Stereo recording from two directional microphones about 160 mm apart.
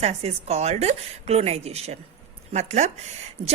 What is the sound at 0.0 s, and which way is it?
A woman's voice, 40° right (ahead or behind).